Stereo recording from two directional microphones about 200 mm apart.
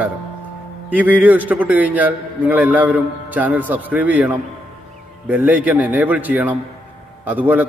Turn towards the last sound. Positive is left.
turn(degrees=-10)  # may be behind; listen again after turning